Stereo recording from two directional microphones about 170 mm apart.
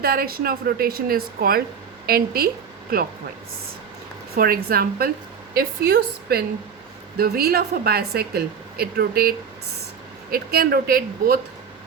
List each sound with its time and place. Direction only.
0.0 s speech: 65° right (ahead or behind)
4.4 s speech: 60° right (ahead or behind)
5.5 s a woman's voice: 70° right (ahead or behind)